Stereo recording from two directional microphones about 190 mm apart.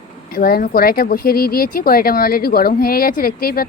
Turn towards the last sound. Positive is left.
turn(degrees=50)  # may be behind; listen again after turning